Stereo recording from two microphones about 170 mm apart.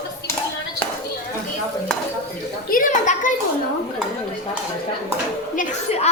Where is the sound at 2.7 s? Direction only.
50° left (ahead or behind).